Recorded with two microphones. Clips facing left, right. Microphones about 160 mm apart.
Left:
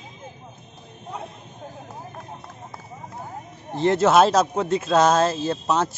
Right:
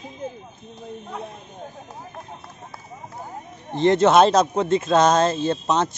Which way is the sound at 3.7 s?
5° left (ahead or behind).